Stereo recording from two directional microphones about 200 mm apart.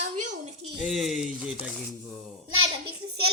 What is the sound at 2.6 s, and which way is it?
Speech, 25° right (ahead or behind).